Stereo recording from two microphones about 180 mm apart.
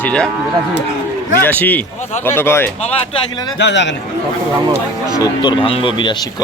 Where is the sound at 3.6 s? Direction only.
75° left (ahead or behind).